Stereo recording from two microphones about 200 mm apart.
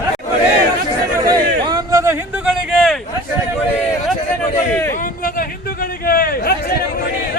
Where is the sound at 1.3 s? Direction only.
20° right (ahead or behind).